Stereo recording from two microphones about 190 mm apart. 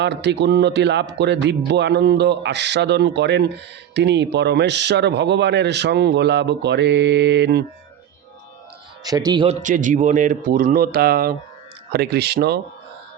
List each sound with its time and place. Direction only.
0.0 s speech: 65° right (ahead or behind)
9.0 s speech: 20° right (ahead or behind)
9.6 s speech: 40° right (ahead or behind); by 12.5 s 60° right (ahead or behind)